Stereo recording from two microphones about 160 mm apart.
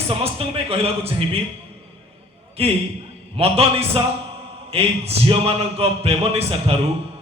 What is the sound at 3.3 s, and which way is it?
A man's voice, 40° right (ahead or behind).